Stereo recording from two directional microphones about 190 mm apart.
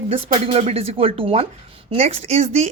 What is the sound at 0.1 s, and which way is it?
A woman's voice, 30° right (ahead or behind).